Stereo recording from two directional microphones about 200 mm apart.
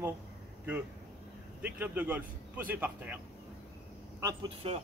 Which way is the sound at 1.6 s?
10° right (ahead or behind).